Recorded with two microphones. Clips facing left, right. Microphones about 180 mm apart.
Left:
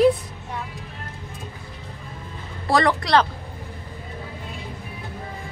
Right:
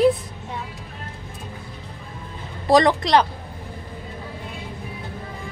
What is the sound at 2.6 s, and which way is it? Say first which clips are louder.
Speech: right 4 dB; 20° right (ahead or behind).